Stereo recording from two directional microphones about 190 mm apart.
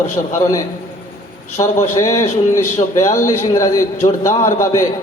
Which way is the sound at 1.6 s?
20° left (ahead or behind).